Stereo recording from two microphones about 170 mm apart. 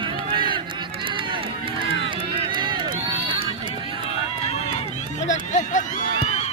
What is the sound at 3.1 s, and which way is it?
Music, 30° right (ahead or behind).